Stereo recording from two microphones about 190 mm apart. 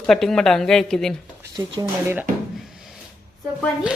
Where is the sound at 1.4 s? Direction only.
20° right (ahead or behind).